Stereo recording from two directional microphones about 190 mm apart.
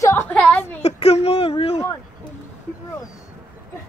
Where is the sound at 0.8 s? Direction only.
35° left (ahead or behind).